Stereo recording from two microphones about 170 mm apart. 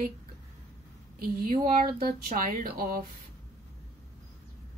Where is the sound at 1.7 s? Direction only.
55° right (ahead or behind).